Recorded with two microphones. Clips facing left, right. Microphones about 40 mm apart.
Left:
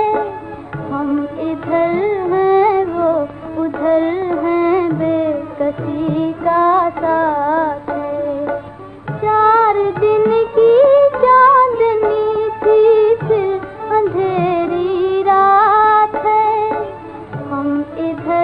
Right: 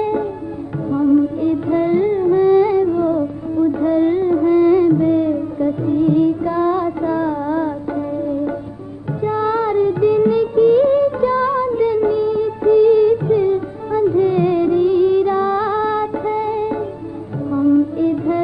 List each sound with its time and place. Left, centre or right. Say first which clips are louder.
0.0 s music: left 3 dB; left
9.2 s music of bollywood: left 7 dB; left
17.5 s a sound: right 4 dB; left